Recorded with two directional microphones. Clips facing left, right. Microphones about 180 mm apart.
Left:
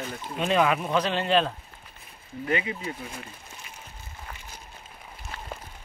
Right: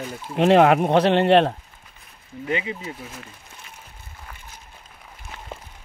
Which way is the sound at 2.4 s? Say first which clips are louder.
Right 1 dB; 20° right (ahead or behind).